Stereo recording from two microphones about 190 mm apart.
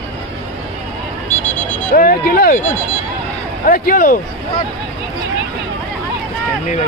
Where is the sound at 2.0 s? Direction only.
50° left (ahead or behind).